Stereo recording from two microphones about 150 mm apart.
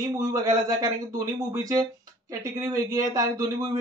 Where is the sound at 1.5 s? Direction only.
25° right (ahead or behind).